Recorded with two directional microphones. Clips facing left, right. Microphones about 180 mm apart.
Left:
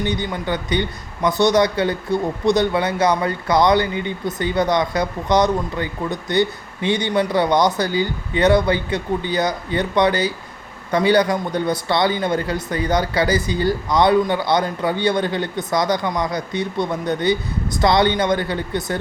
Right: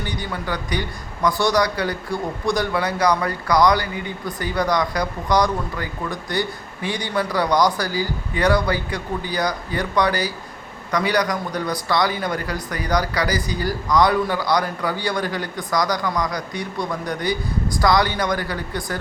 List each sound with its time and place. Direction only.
0.0 s speech: 20° left (ahead or behind)